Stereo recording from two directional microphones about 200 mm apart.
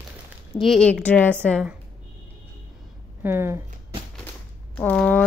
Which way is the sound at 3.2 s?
10° right (ahead or behind).